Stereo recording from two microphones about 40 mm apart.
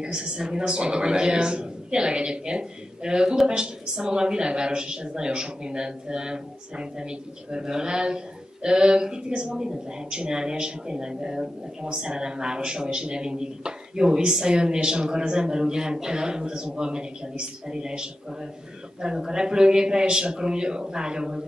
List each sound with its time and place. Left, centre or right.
0.0 s a man's voice: right